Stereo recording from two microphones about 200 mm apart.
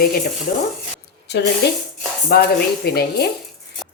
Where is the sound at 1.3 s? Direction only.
60° left (ahead or behind).